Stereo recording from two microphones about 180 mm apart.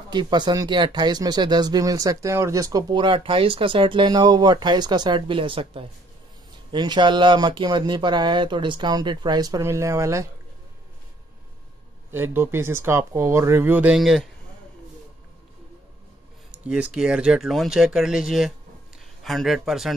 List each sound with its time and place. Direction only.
0.1 s speech: 25° right (ahead or behind)
12.1 s speech: 10° right (ahead or behind)
16.5 s speech: 5° right (ahead or behind)